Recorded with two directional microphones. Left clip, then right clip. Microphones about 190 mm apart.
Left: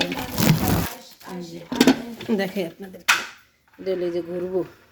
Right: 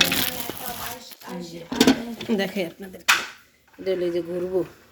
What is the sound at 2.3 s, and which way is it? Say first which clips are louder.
Speech: left 1 dB; 20° left (ahead or behind).